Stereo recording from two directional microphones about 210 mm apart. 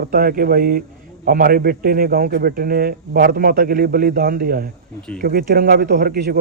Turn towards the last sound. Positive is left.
turn(degrees=-50)  # may be behind; listen again after turning